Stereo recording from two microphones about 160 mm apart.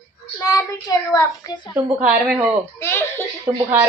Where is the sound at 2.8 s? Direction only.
15° left (ahead or behind).